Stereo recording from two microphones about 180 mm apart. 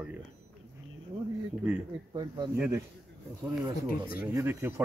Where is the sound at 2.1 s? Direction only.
25° right (ahead or behind).